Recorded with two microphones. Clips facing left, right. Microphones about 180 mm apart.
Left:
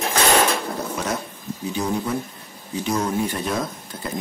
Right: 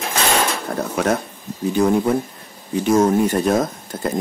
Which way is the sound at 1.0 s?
65° right (ahead or behind).